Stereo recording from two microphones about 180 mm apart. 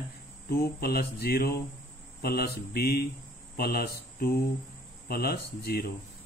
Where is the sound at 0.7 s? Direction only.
60° left (ahead or behind).